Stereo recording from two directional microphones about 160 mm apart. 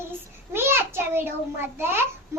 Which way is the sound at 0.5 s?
15° right (ahead or behind).